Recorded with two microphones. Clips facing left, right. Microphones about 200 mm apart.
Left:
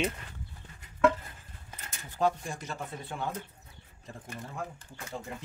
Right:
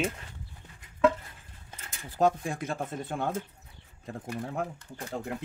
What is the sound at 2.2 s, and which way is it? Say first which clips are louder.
Speech: right 4 dB; 50° right (ahead or behind).